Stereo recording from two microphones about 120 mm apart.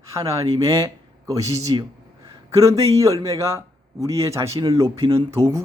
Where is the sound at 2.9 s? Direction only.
25° right (ahead or behind).